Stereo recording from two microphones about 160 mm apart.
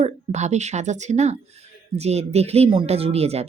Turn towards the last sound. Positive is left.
turn(degrees=-40)  # may be behind; listen again after turning